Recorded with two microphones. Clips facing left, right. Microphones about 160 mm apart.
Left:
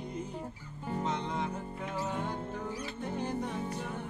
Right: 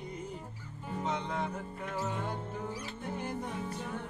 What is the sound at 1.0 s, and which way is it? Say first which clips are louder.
Music: right 1 dB; centre (ahead or behind).